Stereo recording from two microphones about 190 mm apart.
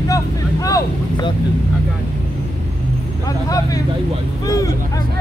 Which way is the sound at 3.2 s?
20° left (ahead or behind).